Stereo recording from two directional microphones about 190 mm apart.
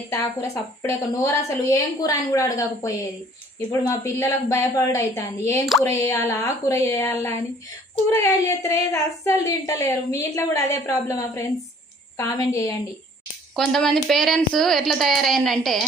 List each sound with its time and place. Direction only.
0.1 s speech: 15° left (ahead or behind)
13.6 s speech: centre (ahead or behind)